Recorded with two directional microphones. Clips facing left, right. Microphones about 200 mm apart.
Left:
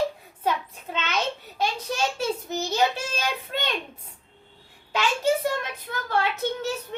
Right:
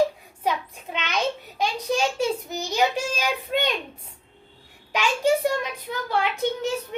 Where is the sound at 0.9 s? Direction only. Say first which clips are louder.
Right 2 dB; 15° right (ahead or behind).